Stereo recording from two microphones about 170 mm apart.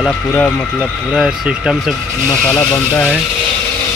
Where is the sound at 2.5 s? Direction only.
10° left (ahead or behind).